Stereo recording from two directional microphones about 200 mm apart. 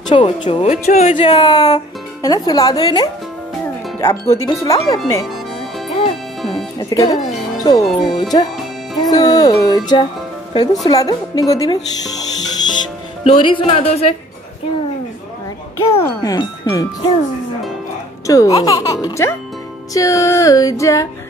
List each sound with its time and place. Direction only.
0.1 s speech: 25° left (ahead or behind)
1.4 s a child's voice: 20° left (ahead or behind)
4.1 s a child's voice: 15° left (ahead or behind)
6.8 s a child's voice: 15° left (ahead or behind)
13.2 s speech: 25° left (ahead or behind)
15.8 s a child's voice: 15° left (ahead or behind)
18.2 s a child's voice: 15° left (ahead or behind)